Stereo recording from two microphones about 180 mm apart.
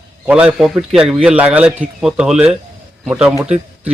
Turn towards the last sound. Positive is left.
turn(degrees=-5)  # may be behind; listen again after turning